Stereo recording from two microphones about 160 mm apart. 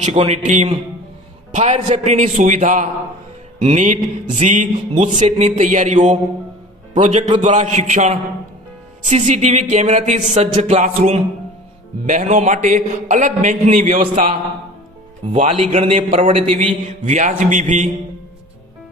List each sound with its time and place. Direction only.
0.0 s a man's voice: 45° right (ahead or behind)
15.4 s speech: 40° right (ahead or behind)
16.8 s a man's voice: 50° right (ahead or behind)